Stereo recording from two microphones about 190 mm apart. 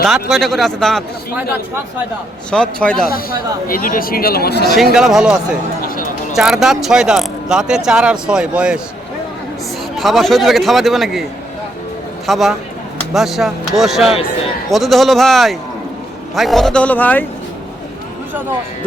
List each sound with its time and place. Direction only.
0.0 s speech: centre (ahead or behind)
2.5 s speech: 5° left (ahead or behind)
3.1 s speech: 50° left (ahead or behind)
4.9 s speech: 5° right (ahead or behind)
9.9 s speech: centre (ahead or behind)